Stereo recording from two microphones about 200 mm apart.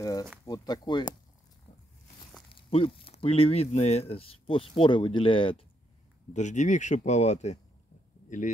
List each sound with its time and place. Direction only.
0.0 s speech: 20° left (ahead or behind)
2.5 s speech: 25° left (ahead or behind)
6.3 s speech: 35° left (ahead or behind)